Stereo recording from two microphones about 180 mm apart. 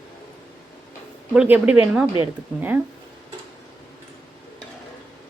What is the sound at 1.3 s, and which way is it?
Speech, 10° right (ahead or behind).